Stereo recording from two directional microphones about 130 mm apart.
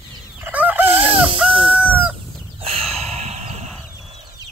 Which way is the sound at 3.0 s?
55° right (ahead or behind).